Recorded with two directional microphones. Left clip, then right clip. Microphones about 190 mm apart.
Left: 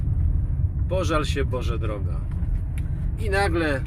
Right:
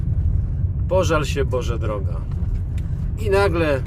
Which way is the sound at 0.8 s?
20° right (ahead or behind).